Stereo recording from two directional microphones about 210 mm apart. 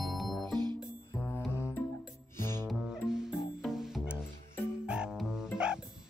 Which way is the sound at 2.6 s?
Centre (ahead or behind).